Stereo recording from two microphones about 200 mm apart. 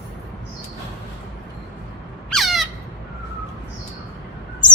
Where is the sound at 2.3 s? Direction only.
Centre (ahead or behind).